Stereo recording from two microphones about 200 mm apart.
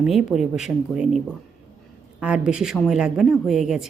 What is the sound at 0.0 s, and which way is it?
Speech, 5° right (ahead or behind).